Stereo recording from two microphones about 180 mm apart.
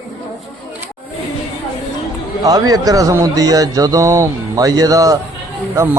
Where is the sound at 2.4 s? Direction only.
20° right (ahead or behind).